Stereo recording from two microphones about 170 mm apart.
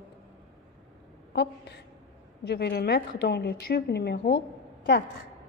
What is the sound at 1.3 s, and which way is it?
A woman's voice, 80° left.